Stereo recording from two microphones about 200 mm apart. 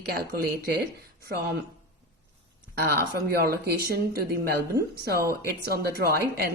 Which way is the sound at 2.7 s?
50° right (ahead or behind).